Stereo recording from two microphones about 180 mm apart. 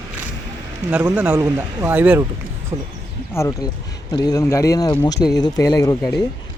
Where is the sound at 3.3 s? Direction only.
15° left (ahead or behind).